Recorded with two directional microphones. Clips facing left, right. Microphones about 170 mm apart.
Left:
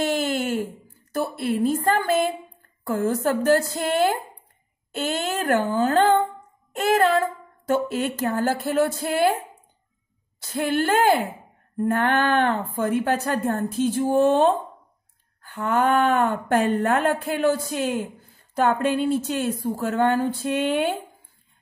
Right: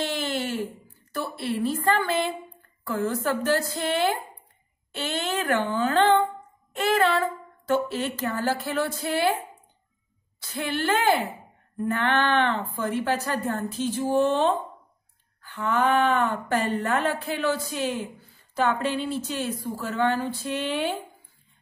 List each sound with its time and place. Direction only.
0.0 s a sound: 50° left (ahead or behind)
1.1 s a woman's voice: 50° left (ahead or behind)
10.4 s speech: 50° left (ahead or behind)
15.5 s speech: 50° left (ahead or behind)